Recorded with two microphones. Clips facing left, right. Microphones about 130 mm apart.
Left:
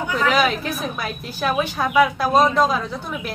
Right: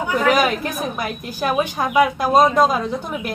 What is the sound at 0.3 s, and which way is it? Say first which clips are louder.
A woman's voice: right 2 dB; 15° right (ahead or behind).